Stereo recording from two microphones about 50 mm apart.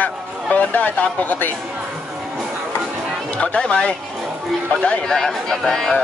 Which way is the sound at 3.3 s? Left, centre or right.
Left.